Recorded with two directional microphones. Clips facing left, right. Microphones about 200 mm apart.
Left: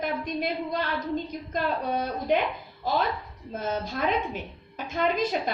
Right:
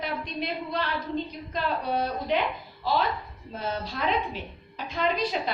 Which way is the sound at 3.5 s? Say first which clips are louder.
Left 2 dB; 45° left (ahead or behind).